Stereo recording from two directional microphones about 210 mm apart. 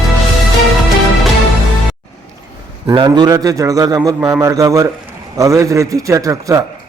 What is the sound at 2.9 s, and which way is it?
A man's voice, 20° right (ahead or behind).